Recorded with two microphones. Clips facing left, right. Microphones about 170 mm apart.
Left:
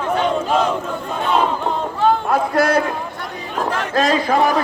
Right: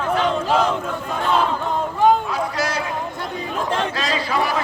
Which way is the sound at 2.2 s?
55° left (ahead or behind).